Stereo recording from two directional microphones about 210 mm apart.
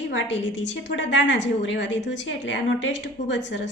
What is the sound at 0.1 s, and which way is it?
A woman's voice, 60° left (ahead or behind).